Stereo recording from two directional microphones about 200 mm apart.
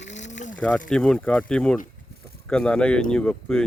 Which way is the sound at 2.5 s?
5° left (ahead or behind).